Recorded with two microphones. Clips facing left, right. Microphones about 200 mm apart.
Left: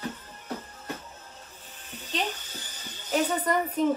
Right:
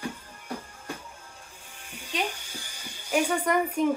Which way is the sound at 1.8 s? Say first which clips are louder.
Even; 10° right (ahead or behind).